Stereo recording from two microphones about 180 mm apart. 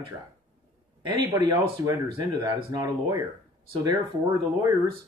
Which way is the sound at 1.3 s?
20° right (ahead or behind).